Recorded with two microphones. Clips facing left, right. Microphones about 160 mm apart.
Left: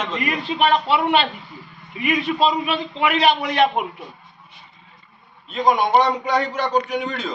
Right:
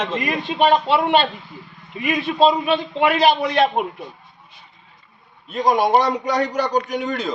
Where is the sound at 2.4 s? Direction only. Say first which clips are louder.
Right 4 dB; 30° right (ahead or behind).